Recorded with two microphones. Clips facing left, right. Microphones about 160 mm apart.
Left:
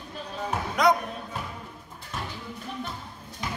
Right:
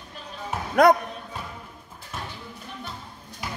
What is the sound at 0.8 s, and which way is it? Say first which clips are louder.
Music: right 5 dB; 55° right (ahead or behind).